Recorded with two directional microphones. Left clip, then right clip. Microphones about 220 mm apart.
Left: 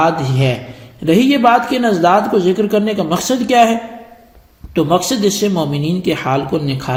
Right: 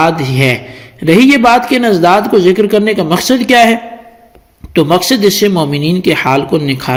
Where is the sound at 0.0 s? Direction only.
35° right (ahead or behind).